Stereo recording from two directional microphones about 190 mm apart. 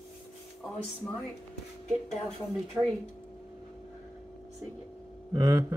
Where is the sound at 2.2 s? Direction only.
Centre (ahead or behind).